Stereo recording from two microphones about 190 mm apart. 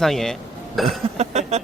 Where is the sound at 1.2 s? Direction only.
35° right (ahead or behind).